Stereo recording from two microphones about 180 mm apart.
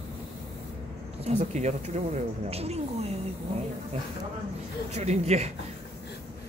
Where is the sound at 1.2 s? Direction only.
35° right (ahead or behind).